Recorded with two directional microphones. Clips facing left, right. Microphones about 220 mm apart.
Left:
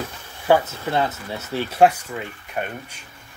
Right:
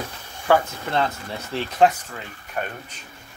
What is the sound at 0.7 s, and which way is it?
Speech, 5° left (ahead or behind).